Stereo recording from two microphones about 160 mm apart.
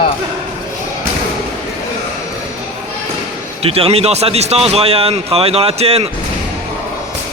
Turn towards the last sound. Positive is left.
turn(degrees=-40)  # may be behind; listen again after turning